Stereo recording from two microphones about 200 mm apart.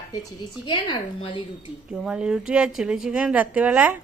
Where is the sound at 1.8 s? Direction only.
5° right (ahead or behind).